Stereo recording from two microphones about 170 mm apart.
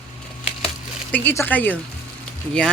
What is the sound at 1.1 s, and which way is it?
Speech, 10° left (ahead or behind).